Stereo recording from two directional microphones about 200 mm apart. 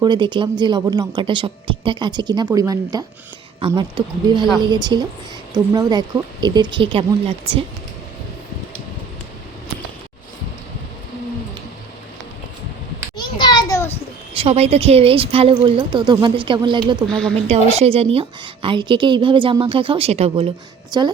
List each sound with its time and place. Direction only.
0.0 s a woman's voice: 25° right (ahead or behind)
13.1 s a sound: 20° left (ahead or behind)
14.3 s a woman's voice: 30° right (ahead or behind)
17.1 s a woman's voice: 5° left (ahead or behind)
17.3 s a woman's voice: 30° right (ahead or behind)